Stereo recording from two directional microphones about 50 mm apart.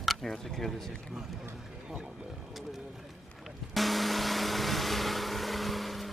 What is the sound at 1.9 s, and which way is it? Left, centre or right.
Speech, centre.